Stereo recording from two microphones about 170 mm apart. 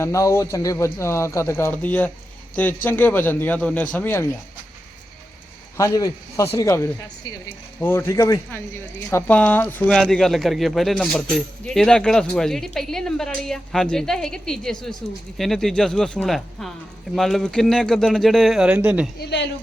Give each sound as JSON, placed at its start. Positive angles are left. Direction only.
{"t": 0.0, "sound": "speech", "side_deg": 15}
{"t": 5.7, "sound": "a man's voice", "side_deg": 20}
{"t": 19.2, "sound": "speech", "side_deg": 90}